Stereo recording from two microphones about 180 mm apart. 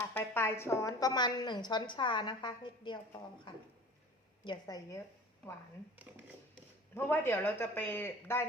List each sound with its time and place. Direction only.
0.0 s a woman's voice: 10° left (ahead or behind)
6.9 s speech: 15° left (ahead or behind)